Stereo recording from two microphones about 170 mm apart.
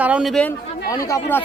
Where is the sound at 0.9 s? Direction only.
20° left (ahead or behind).